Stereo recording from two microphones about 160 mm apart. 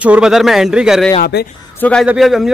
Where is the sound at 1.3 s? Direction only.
90° left.